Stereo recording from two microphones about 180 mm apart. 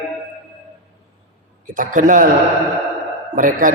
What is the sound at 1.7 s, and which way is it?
Speech, 50° right (ahead or behind).